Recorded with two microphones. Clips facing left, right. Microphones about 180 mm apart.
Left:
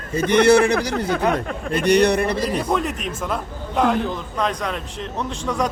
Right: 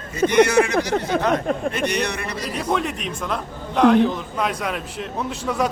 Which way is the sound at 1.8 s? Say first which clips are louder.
Left 9 dB; 35° left (ahead or behind).